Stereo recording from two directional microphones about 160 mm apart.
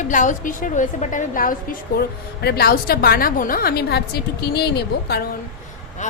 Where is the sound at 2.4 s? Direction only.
75° left (ahead or behind).